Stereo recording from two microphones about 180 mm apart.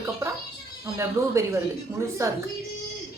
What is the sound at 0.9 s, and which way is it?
A woman's voice, 15° right (ahead or behind).